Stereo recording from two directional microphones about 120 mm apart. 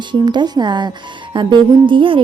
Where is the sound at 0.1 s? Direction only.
40° right (ahead or behind).